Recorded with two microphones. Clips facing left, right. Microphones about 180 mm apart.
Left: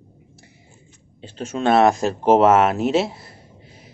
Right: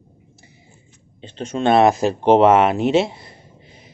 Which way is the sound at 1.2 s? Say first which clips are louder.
Right 2 dB; 5° left (ahead or behind).